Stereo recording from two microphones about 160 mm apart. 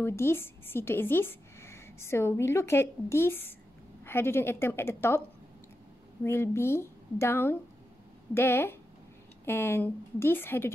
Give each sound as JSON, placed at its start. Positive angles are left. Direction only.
{"t": 0.0, "sound": "a woman's voice", "side_deg": 15}
{"t": 6.2, "sound": "a woman's voice", "side_deg": 15}